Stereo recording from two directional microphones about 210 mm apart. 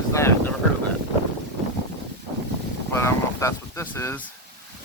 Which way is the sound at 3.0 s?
15° left (ahead or behind).